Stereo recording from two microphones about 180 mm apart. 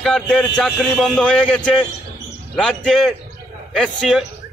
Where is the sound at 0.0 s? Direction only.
Centre (ahead or behind).